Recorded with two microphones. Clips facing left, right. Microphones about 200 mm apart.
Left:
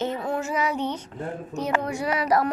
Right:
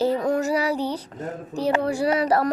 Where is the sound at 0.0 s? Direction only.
35° right (ahead or behind).